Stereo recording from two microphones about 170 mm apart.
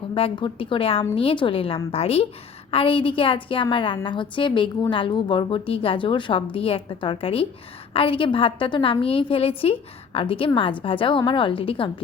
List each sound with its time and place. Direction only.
0.1 s a woman's voice: 30° left (ahead or behind)